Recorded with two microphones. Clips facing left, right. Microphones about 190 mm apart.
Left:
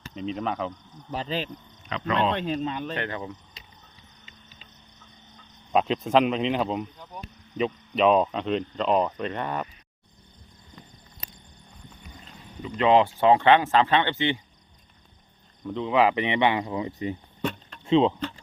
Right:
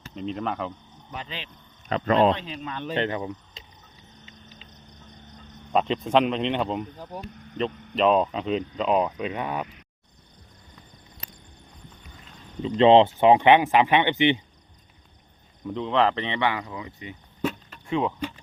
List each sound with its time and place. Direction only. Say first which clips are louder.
0.1 s speech: even; centre (ahead or behind)
1.1 s speech: left 8 dB; 35° left (ahead or behind)
1.9 s speech: right 5 dB; 45° right (ahead or behind)
2.3 s speech: left 3 dB; 50° left (ahead or behind)
2.9 s speech: right 5 dB; 20° right (ahead or behind)
5.7 s speech: even; centre (ahead or behind)
7.9 s speech: even; centre (ahead or behind)
12.6 s speech: right 4 dB; 25° right (ahead or behind)
15.6 s speech: left 1 dB; centre (ahead or behind); by 17.2 s 35° left (ahead or behind)
17.4 s a sound: right 2 dB; 5° right (ahead or behind)
17.8 s speech: left 6 dB; 25° left (ahead or behind)